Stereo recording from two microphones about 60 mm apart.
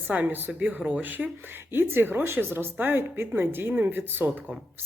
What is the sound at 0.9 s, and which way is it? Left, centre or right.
Speech, right.